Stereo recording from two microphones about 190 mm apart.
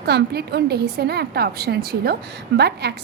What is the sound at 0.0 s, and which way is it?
A woman's voice, 60° right (ahead or behind).